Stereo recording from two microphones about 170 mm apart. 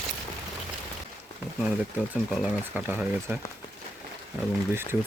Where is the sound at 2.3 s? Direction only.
5° right (ahead or behind).